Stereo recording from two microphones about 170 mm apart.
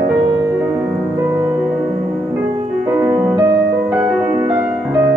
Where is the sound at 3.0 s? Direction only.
15° right (ahead or behind).